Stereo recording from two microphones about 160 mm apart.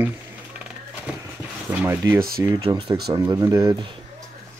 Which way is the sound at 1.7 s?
10° right (ahead or behind).